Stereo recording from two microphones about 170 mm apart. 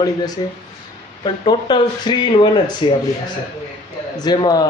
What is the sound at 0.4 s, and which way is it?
Speech, 25° left (ahead or behind).